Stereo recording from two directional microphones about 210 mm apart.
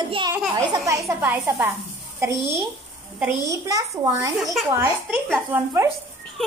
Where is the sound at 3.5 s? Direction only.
15° right (ahead or behind).